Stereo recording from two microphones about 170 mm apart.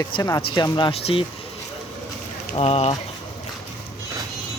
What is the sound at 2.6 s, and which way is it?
Speech, 35° left (ahead or behind).